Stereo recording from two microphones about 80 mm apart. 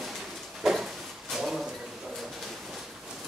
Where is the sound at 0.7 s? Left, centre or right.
Centre.